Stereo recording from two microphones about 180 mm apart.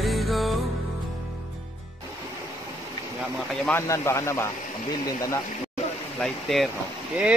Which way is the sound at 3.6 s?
15° left (ahead or behind).